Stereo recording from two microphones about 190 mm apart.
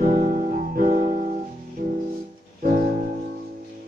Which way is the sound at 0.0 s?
50° right (ahead or behind).